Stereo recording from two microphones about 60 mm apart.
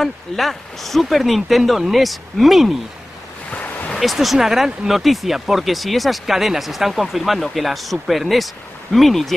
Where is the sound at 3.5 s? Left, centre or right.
Left.